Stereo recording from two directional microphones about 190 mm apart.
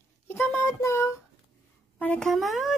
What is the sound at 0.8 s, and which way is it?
A child's voice, 15° left (ahead or behind).